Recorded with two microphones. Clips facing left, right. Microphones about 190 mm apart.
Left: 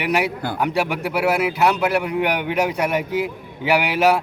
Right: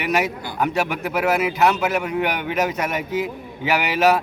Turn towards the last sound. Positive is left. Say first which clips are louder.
# left 1 dB
turn(degrees=10)  # may be behind; listen again after turning